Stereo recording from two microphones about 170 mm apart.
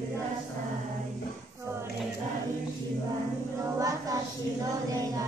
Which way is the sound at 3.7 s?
20° right (ahead or behind).